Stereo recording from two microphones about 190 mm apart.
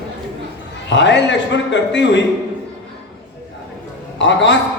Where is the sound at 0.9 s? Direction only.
70° left (ahead or behind).